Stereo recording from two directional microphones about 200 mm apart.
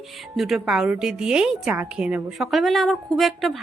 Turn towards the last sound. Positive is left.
turn(degrees=0)  # may be behind; listen again after turning